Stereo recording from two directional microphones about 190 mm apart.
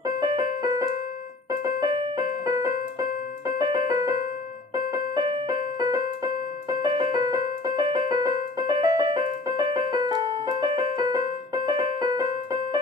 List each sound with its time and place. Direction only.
0.2 s keyboard: 20° right (ahead or behind)
4.7 s music: 20° right (ahead or behind)